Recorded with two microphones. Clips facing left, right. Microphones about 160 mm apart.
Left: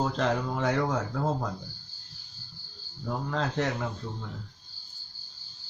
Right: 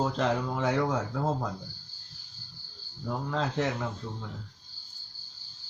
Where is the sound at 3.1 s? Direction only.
5° right (ahead or behind).